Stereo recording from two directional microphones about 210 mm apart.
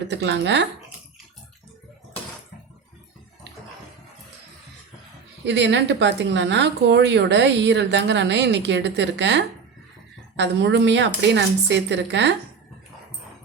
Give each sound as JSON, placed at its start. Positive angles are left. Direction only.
{"t": 0.1, "sound": "speech", "side_deg": -55}
{"t": 5.5, "sound": "speech", "side_deg": -55}